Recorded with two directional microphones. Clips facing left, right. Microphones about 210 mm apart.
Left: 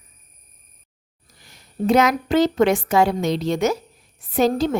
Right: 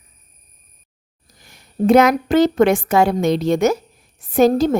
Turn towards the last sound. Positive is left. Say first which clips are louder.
# right 5 dB
turn(degrees=-45)  # may be behind; listen again after turning